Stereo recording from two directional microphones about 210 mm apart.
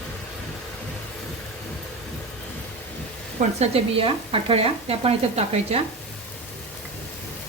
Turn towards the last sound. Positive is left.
turn(degrees=-30)  # may be behind; listen again after turning